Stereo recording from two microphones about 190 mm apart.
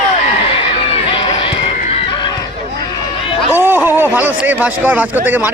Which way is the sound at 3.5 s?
10° right (ahead or behind).